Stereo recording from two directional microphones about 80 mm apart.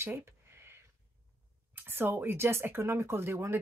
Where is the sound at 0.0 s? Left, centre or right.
Right.